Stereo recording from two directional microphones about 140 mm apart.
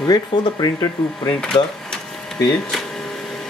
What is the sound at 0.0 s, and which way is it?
Speech, 30° left (ahead or behind).